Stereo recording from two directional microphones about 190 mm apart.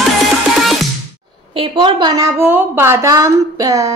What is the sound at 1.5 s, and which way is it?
A woman's voice, 25° right (ahead or behind).